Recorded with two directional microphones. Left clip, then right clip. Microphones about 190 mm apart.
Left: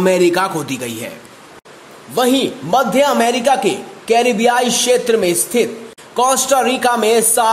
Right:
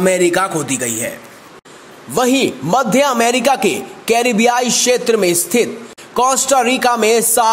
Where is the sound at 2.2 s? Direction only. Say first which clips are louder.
Right 1 dB; 20° right (ahead or behind).